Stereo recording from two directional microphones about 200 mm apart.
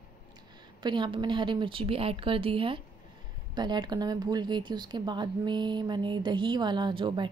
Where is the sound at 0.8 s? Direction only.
25° right (ahead or behind).